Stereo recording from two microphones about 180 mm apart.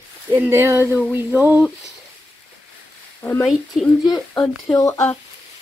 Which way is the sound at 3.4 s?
Centre (ahead or behind).